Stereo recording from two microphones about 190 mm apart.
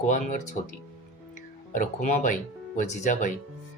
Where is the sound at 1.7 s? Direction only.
40° left (ahead or behind).